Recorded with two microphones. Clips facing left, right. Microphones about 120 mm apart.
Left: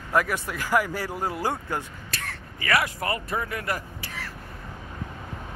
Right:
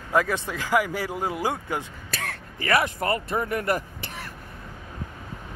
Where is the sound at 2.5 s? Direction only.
35° right (ahead or behind).